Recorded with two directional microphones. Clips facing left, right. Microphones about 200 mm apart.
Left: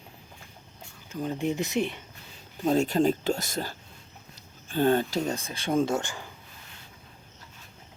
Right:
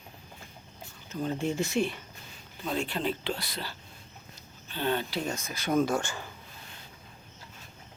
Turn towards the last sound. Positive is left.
turn(degrees=15)  # may be behind; listen again after turning